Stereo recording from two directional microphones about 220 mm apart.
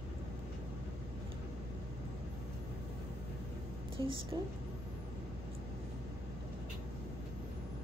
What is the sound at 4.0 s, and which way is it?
Speech, 20° right (ahead or behind).